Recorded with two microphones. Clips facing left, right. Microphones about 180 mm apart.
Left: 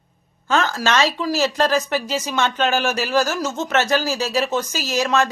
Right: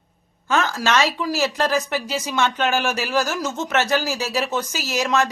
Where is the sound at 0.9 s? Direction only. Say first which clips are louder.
Left 2 dB; 15° right (ahead or behind).